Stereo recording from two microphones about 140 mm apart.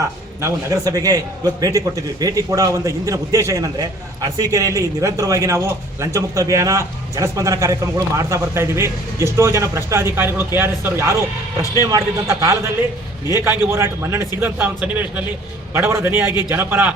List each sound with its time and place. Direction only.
0.4 s a man's voice: 25° right (ahead or behind)